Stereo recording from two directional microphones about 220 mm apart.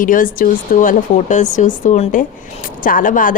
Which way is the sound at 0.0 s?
40° left (ahead or behind).